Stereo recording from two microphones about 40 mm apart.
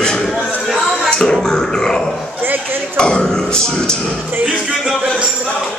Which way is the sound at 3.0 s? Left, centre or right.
Left.